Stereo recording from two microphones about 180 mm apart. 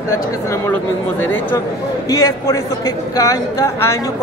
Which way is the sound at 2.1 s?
15° left (ahead or behind).